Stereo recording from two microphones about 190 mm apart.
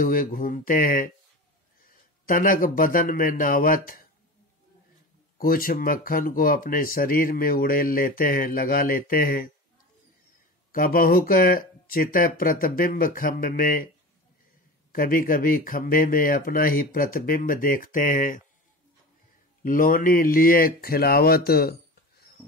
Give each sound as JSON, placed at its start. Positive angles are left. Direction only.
{"t": 0.0, "sound": "speech", "side_deg": 50}
{"t": 2.2, "sound": "speech", "side_deg": 45}
{"t": 5.4, "sound": "speech", "side_deg": 50}
{"t": 10.7, "sound": "speech", "side_deg": 50}
{"t": 14.9, "sound": "speech", "side_deg": 50}
{"t": 19.6, "sound": "speech", "side_deg": 45}